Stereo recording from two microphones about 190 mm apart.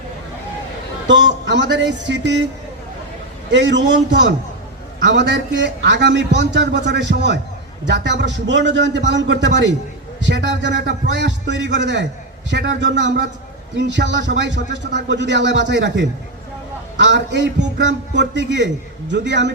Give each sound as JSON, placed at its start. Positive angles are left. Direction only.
{"t": 1.0, "sound": "a man's voice", "side_deg": -70}
{"t": 3.5, "sound": "a man's voice", "side_deg": -70}